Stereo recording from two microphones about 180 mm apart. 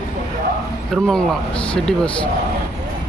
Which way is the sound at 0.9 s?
Centre (ahead or behind).